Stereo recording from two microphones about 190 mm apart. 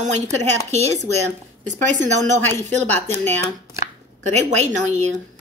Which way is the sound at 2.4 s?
10° left (ahead or behind).